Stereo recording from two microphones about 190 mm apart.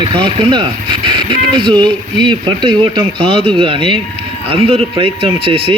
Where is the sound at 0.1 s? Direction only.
30° right (ahead or behind).